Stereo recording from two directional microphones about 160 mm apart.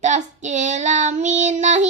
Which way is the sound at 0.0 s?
50° right (ahead or behind).